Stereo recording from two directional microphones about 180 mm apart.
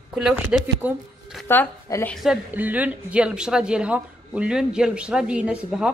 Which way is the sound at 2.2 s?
5° right (ahead or behind).